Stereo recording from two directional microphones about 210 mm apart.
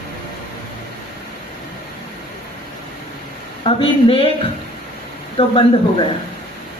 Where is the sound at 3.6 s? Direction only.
25° left (ahead or behind).